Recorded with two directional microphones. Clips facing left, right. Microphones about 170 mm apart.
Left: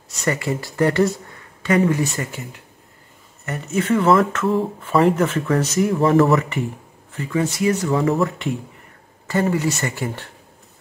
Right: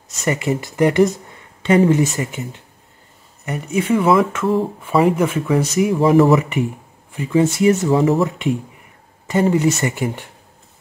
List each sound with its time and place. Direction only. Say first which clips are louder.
0.2 s speech: right 3 dB; 20° right (ahead or behind); by 6.3 s centre (ahead or behind)
7.1 s speech: right 6 dB; 15° right (ahead or behind)